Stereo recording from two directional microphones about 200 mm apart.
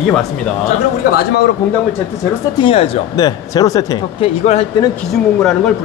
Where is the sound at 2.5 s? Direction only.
25° left (ahead or behind).